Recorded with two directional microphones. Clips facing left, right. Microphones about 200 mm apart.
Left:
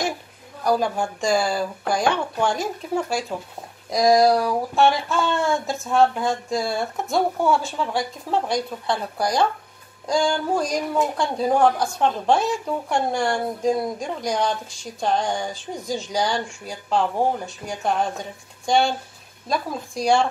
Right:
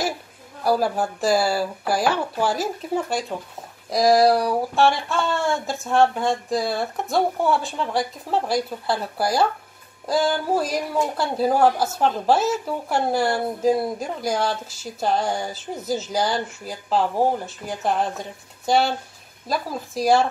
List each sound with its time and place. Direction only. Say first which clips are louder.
0.7 s speech: right 1 dB; 5° right (ahead or behind)